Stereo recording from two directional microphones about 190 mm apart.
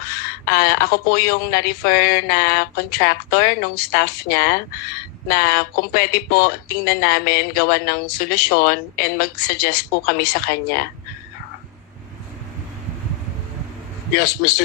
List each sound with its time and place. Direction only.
0.2 s speech: 55° left (ahead or behind)